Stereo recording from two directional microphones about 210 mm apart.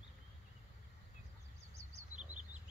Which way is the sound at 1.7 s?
10° right (ahead or behind).